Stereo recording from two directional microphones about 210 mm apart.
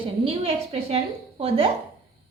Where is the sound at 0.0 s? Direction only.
25° right (ahead or behind).